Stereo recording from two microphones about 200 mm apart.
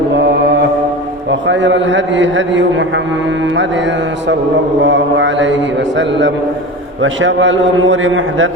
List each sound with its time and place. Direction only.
0.1 s mantra: 60° right (ahead or behind)
1.3 s a man's voice: 65° right (ahead or behind)
4.8 s mantra: 65° right (ahead or behind)
7.0 s a man's voice: 70° right (ahead or behind)